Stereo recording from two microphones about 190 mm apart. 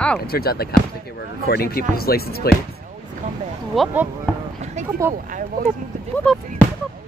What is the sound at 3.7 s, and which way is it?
Speech, 5° right (ahead or behind).